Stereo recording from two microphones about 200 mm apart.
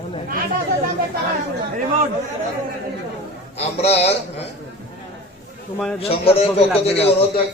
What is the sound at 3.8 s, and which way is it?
Speech, 30° left (ahead or behind).